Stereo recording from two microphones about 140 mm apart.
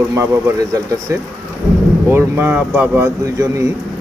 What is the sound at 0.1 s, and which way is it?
Speech, 20° right (ahead or behind).